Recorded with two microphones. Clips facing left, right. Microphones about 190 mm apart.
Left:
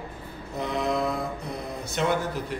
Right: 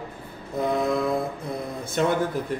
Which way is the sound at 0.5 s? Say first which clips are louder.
Right 4 dB; 50° right (ahead or behind).